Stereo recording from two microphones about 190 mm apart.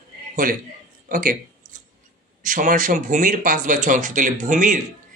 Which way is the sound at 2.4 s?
45° right (ahead or behind).